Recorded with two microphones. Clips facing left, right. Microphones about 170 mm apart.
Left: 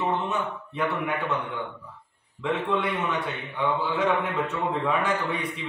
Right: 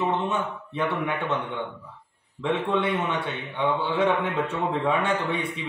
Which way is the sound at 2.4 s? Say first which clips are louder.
Right 2 dB; 25° right (ahead or behind).